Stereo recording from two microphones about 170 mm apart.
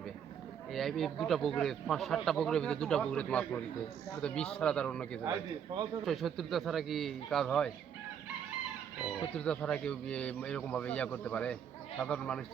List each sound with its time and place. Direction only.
0.7 s speech: centre (ahead or behind)
5.3 s a man's voice: 20° right (ahead or behind)
6.1 s speech: centre (ahead or behind)
9.3 s speech: 5° left (ahead or behind)